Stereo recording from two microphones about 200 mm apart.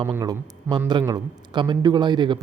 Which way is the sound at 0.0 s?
15° right (ahead or behind).